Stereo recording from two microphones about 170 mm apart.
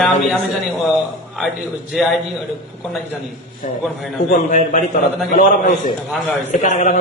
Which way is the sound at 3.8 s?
Centre (ahead or behind).